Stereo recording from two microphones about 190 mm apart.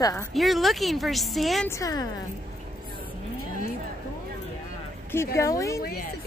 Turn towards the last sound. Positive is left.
turn(degrees=15)  # may be behind; listen again after turning